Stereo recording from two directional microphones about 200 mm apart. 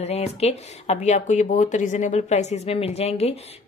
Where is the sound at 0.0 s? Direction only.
30° left (ahead or behind).